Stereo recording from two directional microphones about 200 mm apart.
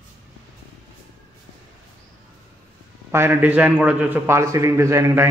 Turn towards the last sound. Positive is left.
turn(degrees=-15)  # may be behind; listen again after turning